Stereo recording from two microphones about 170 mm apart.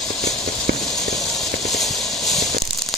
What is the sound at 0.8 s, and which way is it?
Clip-clop, centre (ahead or behind).